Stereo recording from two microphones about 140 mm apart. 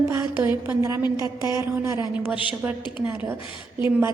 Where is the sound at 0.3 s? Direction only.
10° right (ahead or behind).